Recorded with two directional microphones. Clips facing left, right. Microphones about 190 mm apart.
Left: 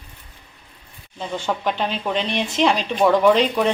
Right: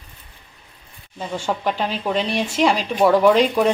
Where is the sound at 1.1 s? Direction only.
10° right (ahead or behind).